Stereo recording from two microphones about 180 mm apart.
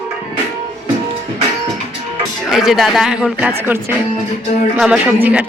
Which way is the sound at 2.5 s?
Centre (ahead or behind).